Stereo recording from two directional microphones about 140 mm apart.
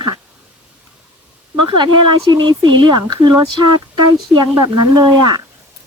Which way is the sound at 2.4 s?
30° right (ahead or behind).